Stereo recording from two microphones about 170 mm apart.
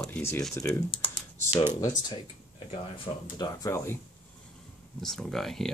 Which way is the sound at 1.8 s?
25° left (ahead or behind).